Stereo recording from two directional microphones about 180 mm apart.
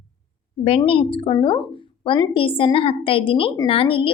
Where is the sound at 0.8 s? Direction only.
30° left (ahead or behind).